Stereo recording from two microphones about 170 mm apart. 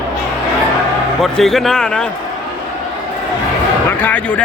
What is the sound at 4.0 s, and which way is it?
Speech, 10° left (ahead or behind).